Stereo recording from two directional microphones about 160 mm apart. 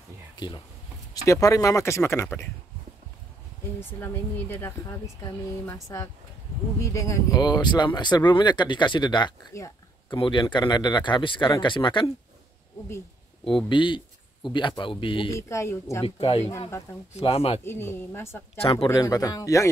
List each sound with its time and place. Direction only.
0.4 s speech: 30° left (ahead or behind)
4.0 s speech: 15° left (ahead or behind); by 12.1 s 30° left (ahead or behind)
13.7 s speech: 30° left (ahead or behind)
15.3 s speech: 20° left (ahead or behind)
16.0 s speech: 35° left (ahead or behind)
17.6 s speech: 15° left (ahead or behind)
18.6 s speech: 35° left (ahead or behind)
18.9 s speech: 20° left (ahead or behind)